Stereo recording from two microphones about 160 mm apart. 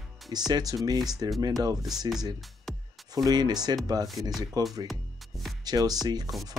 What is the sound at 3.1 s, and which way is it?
Speech, 25° right (ahead or behind).